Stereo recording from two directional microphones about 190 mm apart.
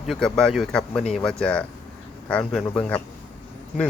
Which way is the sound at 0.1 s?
5° left (ahead or behind).